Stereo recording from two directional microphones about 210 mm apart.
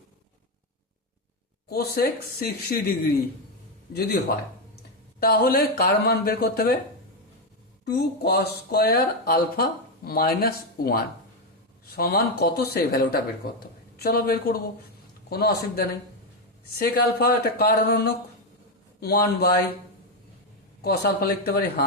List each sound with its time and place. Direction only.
1.7 s speech: 45° left (ahead or behind)
3.9 s speech: 50° left (ahead or behind)
5.2 s speech: 45° left (ahead or behind)
7.9 s speech: 50° left (ahead or behind)
20.8 s speech: 50° left (ahead or behind)